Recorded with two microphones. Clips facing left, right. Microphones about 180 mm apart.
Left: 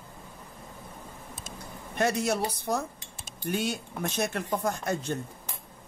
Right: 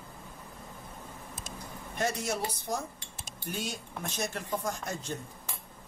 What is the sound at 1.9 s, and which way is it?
Speech, 65° left (ahead or behind).